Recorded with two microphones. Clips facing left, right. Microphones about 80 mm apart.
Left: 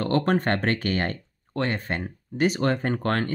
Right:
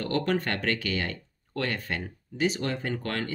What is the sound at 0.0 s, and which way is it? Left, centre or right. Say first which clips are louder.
Speech: left 5 dB; left.